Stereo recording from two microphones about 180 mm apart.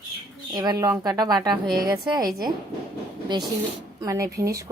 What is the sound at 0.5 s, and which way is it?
A woman's voice, 20° right (ahead or behind).